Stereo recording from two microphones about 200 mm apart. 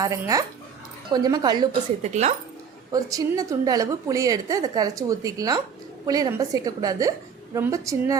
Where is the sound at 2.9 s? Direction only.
15° right (ahead or behind).